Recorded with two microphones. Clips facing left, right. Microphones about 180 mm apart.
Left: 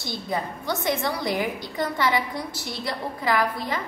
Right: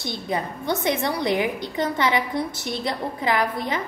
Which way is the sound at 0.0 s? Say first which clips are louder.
Right 2 dB; 20° right (ahead or behind).